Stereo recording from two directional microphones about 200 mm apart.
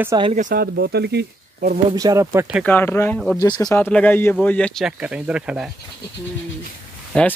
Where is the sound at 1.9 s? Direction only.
15° right (ahead or behind).